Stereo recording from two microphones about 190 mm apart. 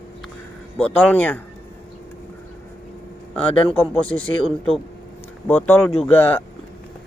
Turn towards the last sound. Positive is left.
turn(degrees=10)  # may be behind; listen again after turning